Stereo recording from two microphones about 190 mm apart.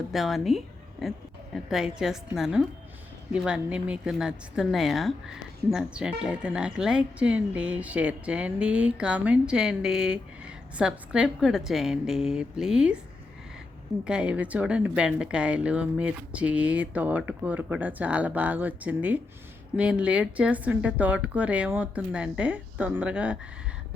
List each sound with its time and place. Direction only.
0.1 s speech: centre (ahead or behind)
1.7 s speech: 5° right (ahead or behind)
14.0 s a woman's voice: 5° right (ahead or behind)